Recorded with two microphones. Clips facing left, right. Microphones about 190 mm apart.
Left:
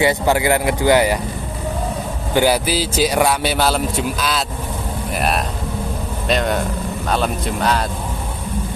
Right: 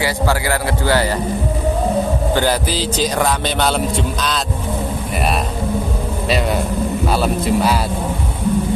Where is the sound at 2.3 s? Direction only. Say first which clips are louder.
Left 5 dB; 10° left (ahead or behind).